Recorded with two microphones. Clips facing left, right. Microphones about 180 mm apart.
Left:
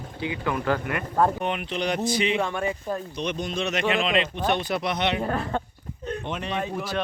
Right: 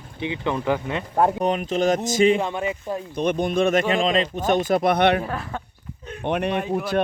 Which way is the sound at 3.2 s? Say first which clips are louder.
Right 12 dB; 55° right (ahead or behind).